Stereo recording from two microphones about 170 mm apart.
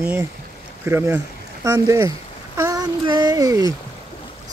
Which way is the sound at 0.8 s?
15° right (ahead or behind).